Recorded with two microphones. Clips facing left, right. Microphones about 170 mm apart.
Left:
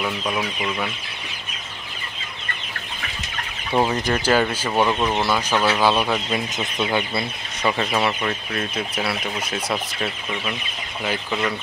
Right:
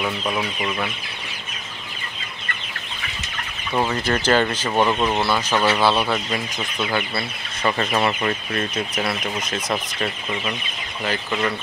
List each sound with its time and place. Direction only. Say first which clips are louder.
0.0 s speech: right 1 dB; 5° right (ahead or behind)
3.7 s speech: left 1 dB; 15° left (ahead or behind)
4.8 s speech: right 1 dB; 5° right (ahead or behind)
5.2 s speech: even; 10° left (ahead or behind)
7.7 s speech: right 2 dB; 5° left (ahead or behind)